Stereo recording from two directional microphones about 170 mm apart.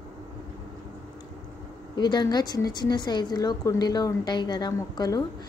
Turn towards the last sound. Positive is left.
turn(degrees=25)  # may be behind; listen again after turning